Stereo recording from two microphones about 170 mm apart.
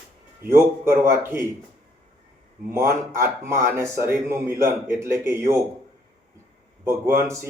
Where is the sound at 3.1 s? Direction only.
15° right (ahead or behind).